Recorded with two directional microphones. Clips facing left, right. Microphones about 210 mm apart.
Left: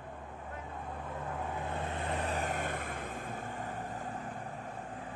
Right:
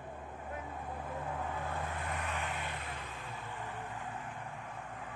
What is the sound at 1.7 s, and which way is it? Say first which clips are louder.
Vehicle: left 3 dB; 25° left (ahead or behind).